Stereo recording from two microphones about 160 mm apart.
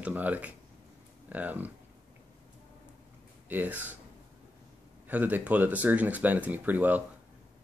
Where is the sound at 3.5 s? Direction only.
10° right (ahead or behind).